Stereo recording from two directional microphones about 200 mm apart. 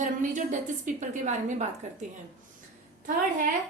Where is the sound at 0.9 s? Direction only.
40° right (ahead or behind).